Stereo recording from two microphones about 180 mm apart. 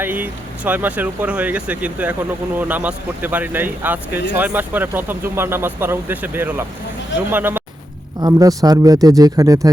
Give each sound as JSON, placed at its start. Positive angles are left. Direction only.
{"t": 0.0, "sound": "speech", "side_deg": -10}